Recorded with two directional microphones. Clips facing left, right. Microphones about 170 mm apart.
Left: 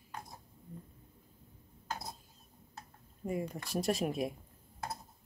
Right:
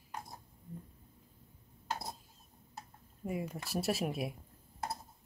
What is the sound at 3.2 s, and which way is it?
Speech, 5° right (ahead or behind).